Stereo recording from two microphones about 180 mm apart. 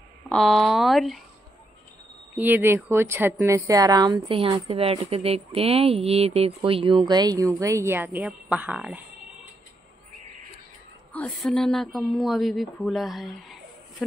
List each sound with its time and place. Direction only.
0.3 s speech: centre (ahead or behind)
2.3 s a woman's voice: 10° right (ahead or behind)
11.1 s speech: centre (ahead or behind)